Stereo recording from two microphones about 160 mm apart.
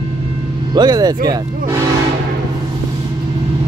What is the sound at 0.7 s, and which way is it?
Speech, 25° right (ahead or behind).